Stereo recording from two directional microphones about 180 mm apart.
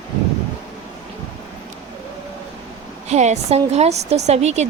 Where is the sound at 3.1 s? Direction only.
40° right (ahead or behind).